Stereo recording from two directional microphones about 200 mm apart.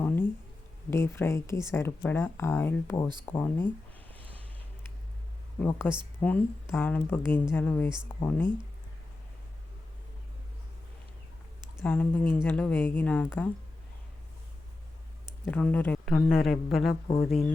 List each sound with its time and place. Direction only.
0.9 s speech: 10° left (ahead or behind)
5.5 s speech: 10° left (ahead or behind)
11.8 s speech: 10° left (ahead or behind)
15.4 s speech: 10° left (ahead or behind)
16.9 s speech: 25° left (ahead or behind)